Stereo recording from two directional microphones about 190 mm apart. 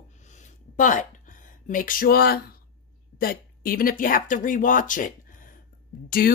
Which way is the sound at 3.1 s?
50° left (ahead or behind).